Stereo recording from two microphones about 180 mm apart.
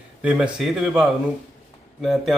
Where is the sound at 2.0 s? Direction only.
Centre (ahead or behind).